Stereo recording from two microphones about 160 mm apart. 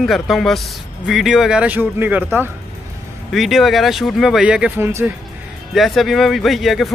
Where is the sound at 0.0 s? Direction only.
Centre (ahead or behind).